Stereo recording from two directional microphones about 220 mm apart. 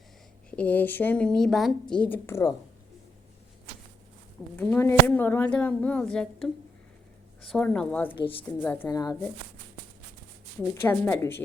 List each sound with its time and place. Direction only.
0.5 s a woman's voice: 5° left (ahead or behind)
4.5 s a woman's voice: 10° left (ahead or behind)
8.1 s a woman's voice: 25° left (ahead or behind)
8.6 s a woman's voice: 10° left (ahead or behind)
10.6 s a woman's voice: 10° left (ahead or behind)